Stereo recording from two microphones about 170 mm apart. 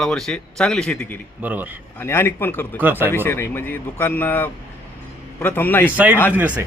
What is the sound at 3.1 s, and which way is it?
Speech, 15° left (ahead or behind).